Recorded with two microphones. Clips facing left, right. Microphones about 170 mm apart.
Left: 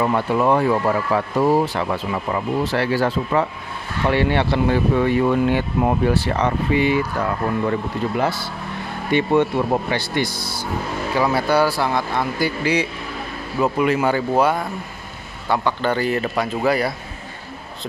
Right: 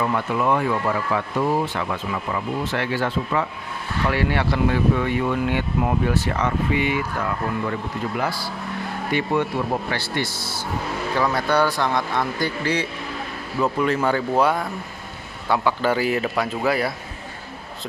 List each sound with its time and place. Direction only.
0.0 s speech: 30° left (ahead or behind)
8.2 s a man's voice: 25° left (ahead or behind); by 16.9 s centre (ahead or behind)